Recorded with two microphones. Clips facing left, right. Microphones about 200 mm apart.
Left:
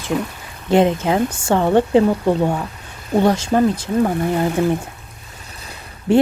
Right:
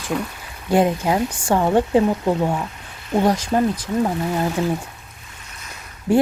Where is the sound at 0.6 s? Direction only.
25° left (ahead or behind).